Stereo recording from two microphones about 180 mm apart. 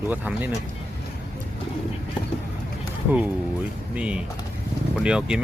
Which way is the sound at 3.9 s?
5° right (ahead or behind).